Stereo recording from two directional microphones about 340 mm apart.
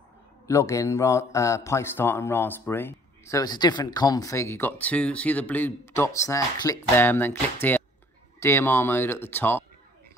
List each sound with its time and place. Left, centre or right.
0.5 s speech: centre
8.4 s speech: centre